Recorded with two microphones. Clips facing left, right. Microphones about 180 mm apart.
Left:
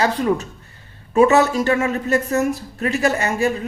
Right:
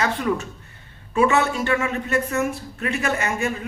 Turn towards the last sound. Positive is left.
turn(degrees=35)  # may be behind; listen again after turning